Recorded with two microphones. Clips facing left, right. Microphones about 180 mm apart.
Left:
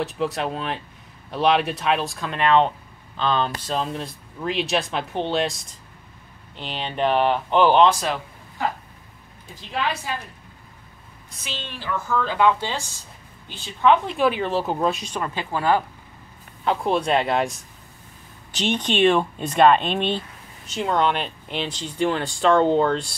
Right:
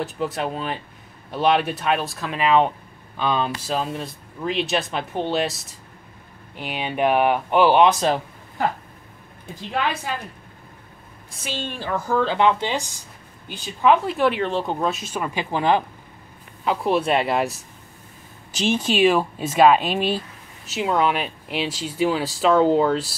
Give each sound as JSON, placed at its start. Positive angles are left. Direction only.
{"t": 0.0, "sound": "speech", "side_deg": 0}
{"t": 11.4, "sound": "a woman's voice", "side_deg": -45}
{"t": 16.6, "sound": "speech", "side_deg": -5}